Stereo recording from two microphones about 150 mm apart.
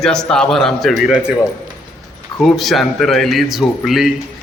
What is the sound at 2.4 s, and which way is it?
A man's voice, centre (ahead or behind).